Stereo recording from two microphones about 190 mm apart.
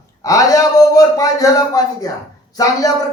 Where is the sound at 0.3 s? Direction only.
20° left (ahead or behind).